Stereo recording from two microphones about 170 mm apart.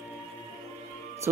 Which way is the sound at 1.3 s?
15° right (ahead or behind).